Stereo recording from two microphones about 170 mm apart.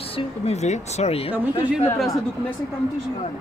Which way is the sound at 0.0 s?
35° left (ahead or behind).